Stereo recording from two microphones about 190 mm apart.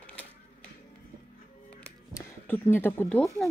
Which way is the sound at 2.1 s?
10° left (ahead or behind).